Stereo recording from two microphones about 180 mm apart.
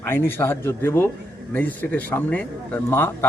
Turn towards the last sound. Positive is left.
turn(degrees=10)  # may be behind; listen again after turning